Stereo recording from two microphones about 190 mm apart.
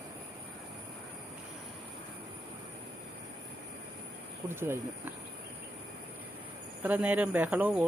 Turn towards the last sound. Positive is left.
turn(degrees=-10)  # may be behind; listen again after turning